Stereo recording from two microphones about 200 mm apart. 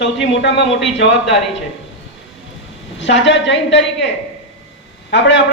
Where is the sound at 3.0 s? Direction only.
65° left (ahead or behind).